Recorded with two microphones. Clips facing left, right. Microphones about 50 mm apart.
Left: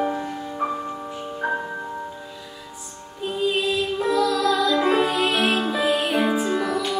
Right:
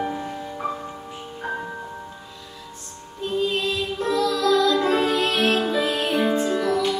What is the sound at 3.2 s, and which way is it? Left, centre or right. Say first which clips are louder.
Music: left 1 dB; centre.